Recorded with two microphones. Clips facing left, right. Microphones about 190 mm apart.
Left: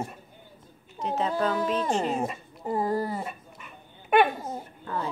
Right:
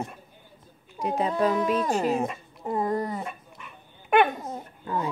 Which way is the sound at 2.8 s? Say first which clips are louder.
Even; 30° left (ahead or behind).